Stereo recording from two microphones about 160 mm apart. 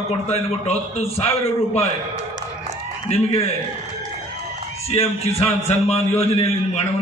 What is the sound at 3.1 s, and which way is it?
Speech, 40° left (ahead or behind).